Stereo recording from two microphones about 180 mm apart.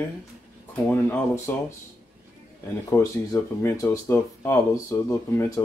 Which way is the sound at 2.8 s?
15° left (ahead or behind).